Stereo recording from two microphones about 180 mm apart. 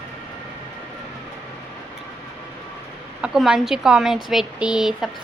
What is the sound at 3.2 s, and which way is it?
Speech, 5° right (ahead or behind).